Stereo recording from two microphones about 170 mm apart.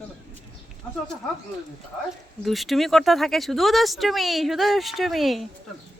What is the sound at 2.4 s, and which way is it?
Speech, centre (ahead or behind).